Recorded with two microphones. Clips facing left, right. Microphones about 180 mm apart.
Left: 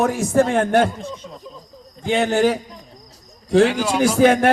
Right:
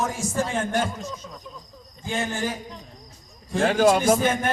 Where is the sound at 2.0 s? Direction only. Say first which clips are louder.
Left 10 dB; 70° left (ahead or behind).